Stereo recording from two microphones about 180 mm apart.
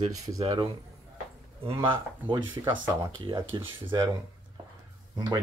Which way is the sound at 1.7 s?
30° right (ahead or behind).